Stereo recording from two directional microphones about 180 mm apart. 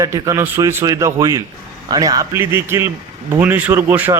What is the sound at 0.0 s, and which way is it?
A man's voice, 15° right (ahead or behind).